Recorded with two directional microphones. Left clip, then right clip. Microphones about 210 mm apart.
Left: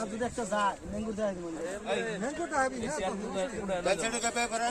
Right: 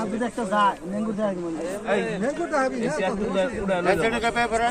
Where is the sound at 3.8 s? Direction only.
55° left (ahead or behind).